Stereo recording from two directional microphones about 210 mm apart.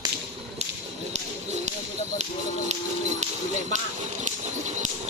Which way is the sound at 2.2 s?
35° right (ahead or behind).